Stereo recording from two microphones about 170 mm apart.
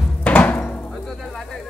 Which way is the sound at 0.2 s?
10° left (ahead or behind).